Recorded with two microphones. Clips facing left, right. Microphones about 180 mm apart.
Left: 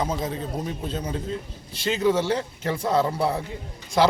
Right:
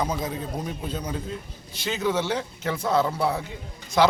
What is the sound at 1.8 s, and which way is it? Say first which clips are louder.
Speech: left 4 dB; 30° left (ahead or behind).